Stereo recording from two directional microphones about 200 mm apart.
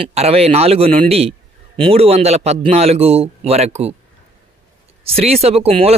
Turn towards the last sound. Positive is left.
turn(degrees=-30)  # may be behind; listen again after turning